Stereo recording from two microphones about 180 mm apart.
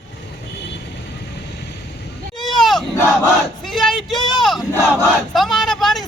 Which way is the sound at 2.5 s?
Centre (ahead or behind).